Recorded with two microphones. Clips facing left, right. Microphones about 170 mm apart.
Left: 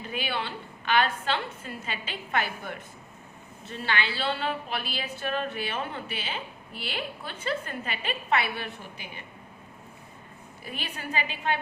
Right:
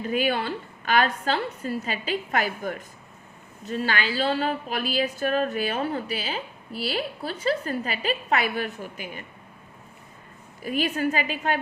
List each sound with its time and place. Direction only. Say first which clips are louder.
0.0 s a woman's voice: right 8 dB; 45° right (ahead or behind)
10.6 s a woman's voice: right 13 dB; 45° right (ahead or behind)